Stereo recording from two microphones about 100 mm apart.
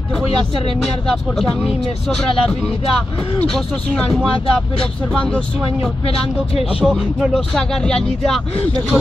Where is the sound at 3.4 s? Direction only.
5° left (ahead or behind).